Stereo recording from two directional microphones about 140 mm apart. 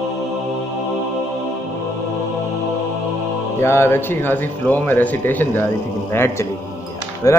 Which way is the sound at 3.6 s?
15° left (ahead or behind).